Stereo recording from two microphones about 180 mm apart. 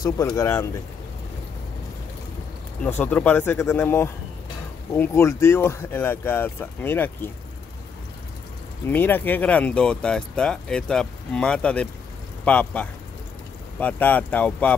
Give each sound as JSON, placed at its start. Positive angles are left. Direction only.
{"t": 0.0, "sound": "speech", "side_deg": 20}
{"t": 2.8, "sound": "speech", "side_deg": 10}
{"t": 8.8, "sound": "speech", "side_deg": 10}